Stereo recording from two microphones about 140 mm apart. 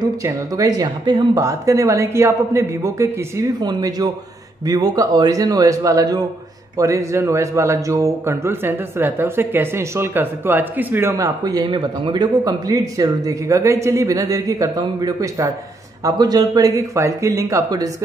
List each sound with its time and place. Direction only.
0.0 s speech: 25° right (ahead or behind)